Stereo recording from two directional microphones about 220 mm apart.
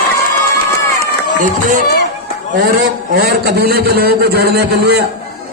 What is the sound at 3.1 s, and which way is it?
A man's voice, 45° right (ahead or behind).